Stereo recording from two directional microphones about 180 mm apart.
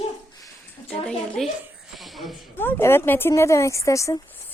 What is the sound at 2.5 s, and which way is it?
Speech, 15° left (ahead or behind).